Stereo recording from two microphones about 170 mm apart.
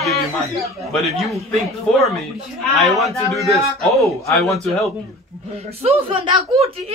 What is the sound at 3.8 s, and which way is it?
Speech, centre (ahead or behind).